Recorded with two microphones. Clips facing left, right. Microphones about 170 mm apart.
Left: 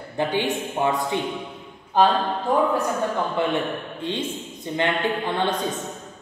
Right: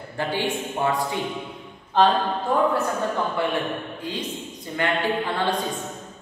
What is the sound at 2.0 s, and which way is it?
Speech, 10° left (ahead or behind).